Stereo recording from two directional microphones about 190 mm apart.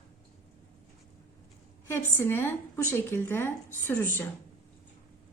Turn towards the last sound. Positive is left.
turn(degrees=10)  # may be behind; listen again after turning